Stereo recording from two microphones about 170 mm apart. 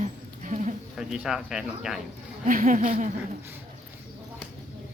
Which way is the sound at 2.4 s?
50° right (ahead or behind).